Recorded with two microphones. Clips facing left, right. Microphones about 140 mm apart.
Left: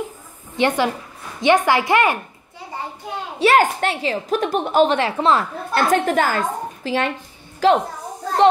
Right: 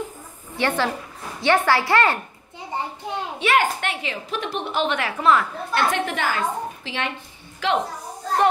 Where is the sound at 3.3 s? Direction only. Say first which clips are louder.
Left 6 dB; 40° left (ahead or behind).